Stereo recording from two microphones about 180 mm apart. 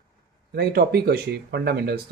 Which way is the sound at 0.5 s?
60° right (ahead or behind).